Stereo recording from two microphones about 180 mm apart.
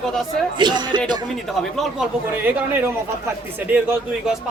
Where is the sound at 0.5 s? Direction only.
25° right (ahead or behind).